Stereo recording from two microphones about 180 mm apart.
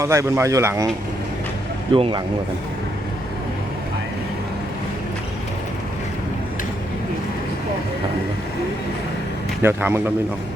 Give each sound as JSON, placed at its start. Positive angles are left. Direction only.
{"t": 0.0, "sound": "speech", "side_deg": -15}
{"t": 1.9, "sound": "speech", "side_deg": -30}
{"t": 9.6, "sound": "speech", "side_deg": -15}